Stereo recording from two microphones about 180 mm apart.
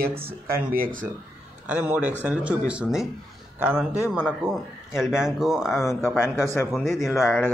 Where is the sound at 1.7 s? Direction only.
5° right (ahead or behind).